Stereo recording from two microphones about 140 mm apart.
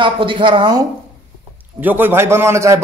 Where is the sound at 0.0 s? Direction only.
35° right (ahead or behind).